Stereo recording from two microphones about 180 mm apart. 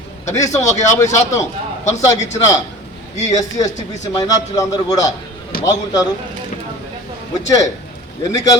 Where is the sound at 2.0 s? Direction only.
15° left (ahead or behind).